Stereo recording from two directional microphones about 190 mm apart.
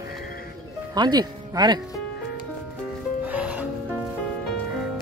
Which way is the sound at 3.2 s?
10° right (ahead or behind).